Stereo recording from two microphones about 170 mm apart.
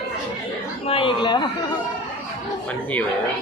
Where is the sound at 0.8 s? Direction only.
30° left (ahead or behind).